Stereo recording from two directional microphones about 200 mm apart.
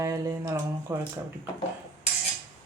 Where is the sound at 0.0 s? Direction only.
15° right (ahead or behind).